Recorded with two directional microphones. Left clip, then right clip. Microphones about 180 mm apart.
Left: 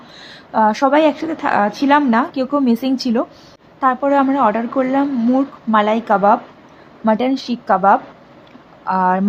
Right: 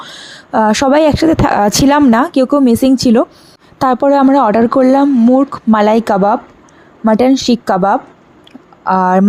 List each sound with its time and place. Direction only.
0.1 s speech: 35° right (ahead or behind)